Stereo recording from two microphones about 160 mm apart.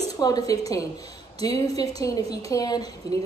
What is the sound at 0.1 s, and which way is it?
A woman's voice, 25° left (ahead or behind).